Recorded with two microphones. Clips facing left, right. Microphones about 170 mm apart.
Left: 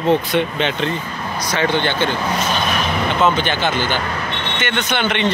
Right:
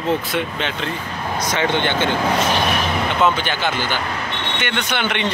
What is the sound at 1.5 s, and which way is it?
Speech, 20° right (ahead or behind).